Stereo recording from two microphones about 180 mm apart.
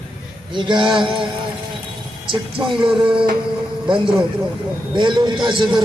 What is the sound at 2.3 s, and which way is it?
Speech, 30° right (ahead or behind).